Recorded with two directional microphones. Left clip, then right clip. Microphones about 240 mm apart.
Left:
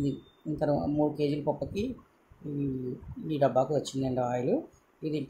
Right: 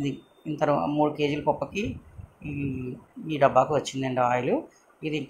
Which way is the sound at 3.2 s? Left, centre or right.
Centre.